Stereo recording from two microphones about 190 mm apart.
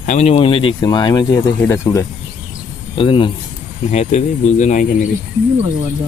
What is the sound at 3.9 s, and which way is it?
Speech, 35° left (ahead or behind).